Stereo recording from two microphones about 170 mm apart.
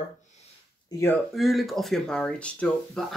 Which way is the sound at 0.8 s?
20° left (ahead or behind).